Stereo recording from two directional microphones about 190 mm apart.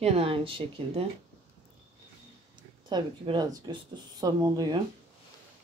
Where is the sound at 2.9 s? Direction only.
25° right (ahead or behind).